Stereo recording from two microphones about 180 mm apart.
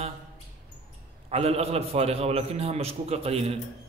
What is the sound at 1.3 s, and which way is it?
A man's voice, 35° right (ahead or behind).